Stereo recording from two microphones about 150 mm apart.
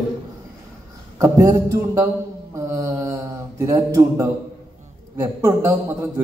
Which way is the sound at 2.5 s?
20° right (ahead or behind).